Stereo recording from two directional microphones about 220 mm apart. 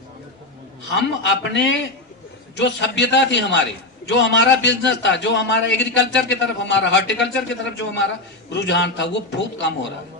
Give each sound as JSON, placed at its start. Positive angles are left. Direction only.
{"t": 0.9, "sound": "a man's voice", "side_deg": 55}